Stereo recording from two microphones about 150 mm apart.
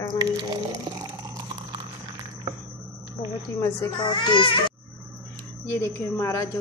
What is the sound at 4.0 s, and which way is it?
Speech, 30° left (ahead or behind).